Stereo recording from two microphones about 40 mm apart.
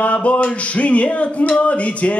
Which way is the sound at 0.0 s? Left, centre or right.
Left.